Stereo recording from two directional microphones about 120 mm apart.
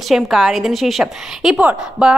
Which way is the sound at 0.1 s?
Centre (ahead or behind).